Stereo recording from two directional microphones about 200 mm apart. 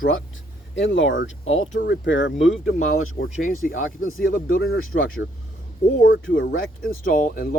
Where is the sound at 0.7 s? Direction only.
70° left (ahead or behind).